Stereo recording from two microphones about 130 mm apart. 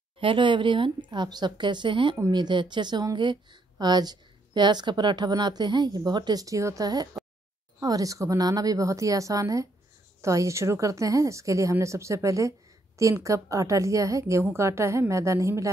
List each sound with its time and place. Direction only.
0.2 s a woman's voice: 40° right (ahead or behind); by 15.7 s 25° right (ahead or behind)